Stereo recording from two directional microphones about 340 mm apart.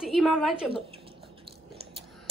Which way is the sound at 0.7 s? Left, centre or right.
Centre.